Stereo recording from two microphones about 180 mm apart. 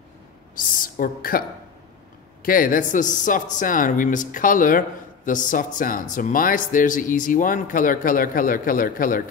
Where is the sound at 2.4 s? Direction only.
50° left (ahead or behind).